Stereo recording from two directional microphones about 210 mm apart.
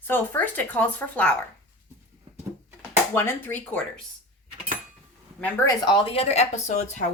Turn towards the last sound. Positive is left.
turn(degrees=35)  # may be behind; listen again after turning